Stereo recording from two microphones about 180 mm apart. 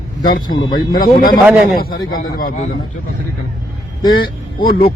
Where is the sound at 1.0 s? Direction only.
55° left (ahead or behind).